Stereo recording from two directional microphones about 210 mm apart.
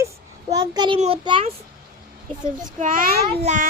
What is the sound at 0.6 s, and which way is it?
Speech, 20° right (ahead or behind).